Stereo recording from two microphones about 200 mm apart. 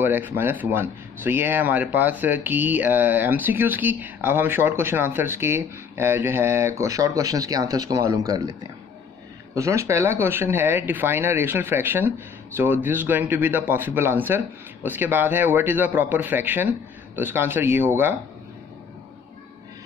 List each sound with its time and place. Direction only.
0.0 s speech: 10° right (ahead or behind)
9.6 s speech: 15° right (ahead or behind)